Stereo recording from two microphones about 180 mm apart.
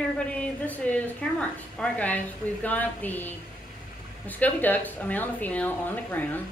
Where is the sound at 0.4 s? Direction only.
10° left (ahead or behind).